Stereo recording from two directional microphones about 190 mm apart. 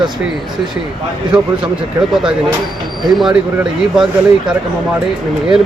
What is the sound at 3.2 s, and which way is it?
Speech, centre (ahead or behind).